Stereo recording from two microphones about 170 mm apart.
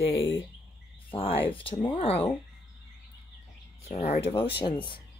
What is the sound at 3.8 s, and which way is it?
Speech, 40° left (ahead or behind).